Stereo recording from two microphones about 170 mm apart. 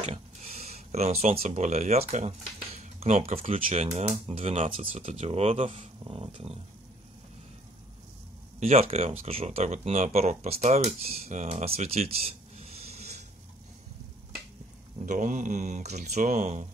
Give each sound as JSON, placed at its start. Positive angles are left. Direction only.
{"t": 0.0, "sound": "speech", "side_deg": -40}
{"t": 8.5, "sound": "speech", "side_deg": -40}
{"t": 15.0, "sound": "speech", "side_deg": -50}